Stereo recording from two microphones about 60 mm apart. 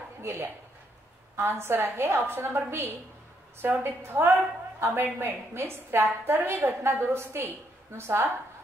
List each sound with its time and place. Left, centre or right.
0.2 s a woman's voice: right
4.3 s a woman's voice: right